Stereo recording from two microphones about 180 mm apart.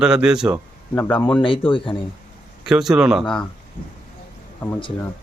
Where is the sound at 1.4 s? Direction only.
30° left (ahead or behind).